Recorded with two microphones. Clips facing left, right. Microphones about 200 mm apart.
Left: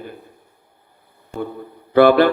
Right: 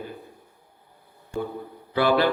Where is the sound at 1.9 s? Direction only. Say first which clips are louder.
Left 9 dB; 60° left (ahead or behind).